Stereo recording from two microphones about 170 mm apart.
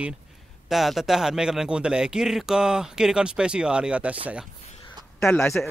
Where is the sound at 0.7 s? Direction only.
Centre (ahead or behind).